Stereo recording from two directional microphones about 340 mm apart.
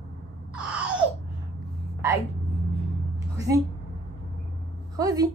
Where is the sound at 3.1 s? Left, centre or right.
Centre.